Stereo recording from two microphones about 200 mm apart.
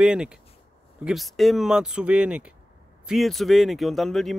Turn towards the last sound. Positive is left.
turn(degrees=0)  # may be behind; listen again after turning